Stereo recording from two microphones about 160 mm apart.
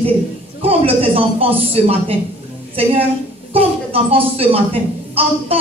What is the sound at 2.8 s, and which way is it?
Speech, 35° right (ahead or behind).